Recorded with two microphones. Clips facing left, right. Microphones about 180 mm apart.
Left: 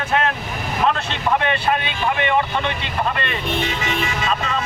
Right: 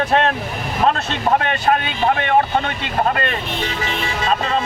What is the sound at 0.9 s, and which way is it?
A man's voice, 40° right (ahead or behind).